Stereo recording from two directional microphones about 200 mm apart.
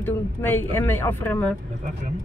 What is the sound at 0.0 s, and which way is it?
Speech, 10° left (ahead or behind).